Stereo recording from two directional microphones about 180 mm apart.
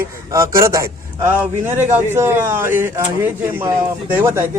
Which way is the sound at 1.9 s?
10° right (ahead or behind).